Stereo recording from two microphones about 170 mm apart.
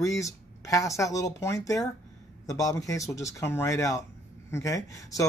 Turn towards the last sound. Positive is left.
turn(degrees=20)  # may be behind; listen again after turning